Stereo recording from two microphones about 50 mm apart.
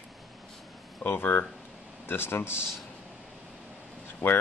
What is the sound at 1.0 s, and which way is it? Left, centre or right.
Speech, left.